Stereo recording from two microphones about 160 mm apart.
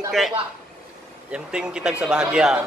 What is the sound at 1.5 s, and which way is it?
Speech, 5° right (ahead or behind).